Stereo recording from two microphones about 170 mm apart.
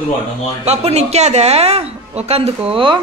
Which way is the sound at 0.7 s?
40° right (ahead or behind).